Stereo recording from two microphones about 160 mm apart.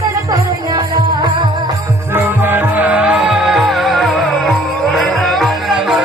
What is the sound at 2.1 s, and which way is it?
Music, 10° right (ahead or behind).